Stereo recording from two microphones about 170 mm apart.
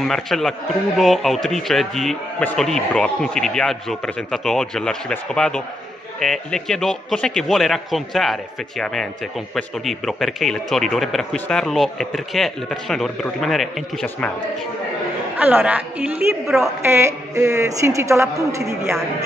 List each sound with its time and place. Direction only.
0.0 s a man's voice: centre (ahead or behind)
15.3 s a woman's voice: 10° right (ahead or behind)